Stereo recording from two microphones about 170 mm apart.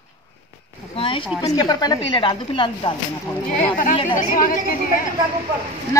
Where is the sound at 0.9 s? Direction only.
30° left (ahead or behind).